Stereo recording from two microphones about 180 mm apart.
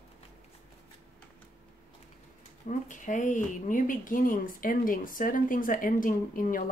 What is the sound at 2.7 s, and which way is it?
Speech, 45° left (ahead or behind).